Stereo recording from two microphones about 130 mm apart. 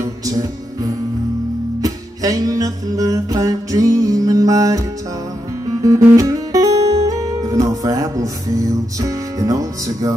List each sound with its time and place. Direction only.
0.0 s music: 25° right (ahead or behind)